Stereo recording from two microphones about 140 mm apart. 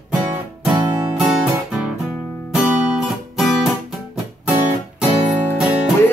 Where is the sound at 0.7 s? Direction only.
30° right (ahead or behind).